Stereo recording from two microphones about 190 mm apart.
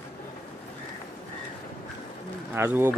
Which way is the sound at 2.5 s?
15° right (ahead or behind).